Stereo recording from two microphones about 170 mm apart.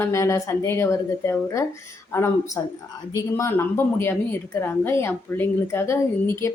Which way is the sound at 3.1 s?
15° left (ahead or behind).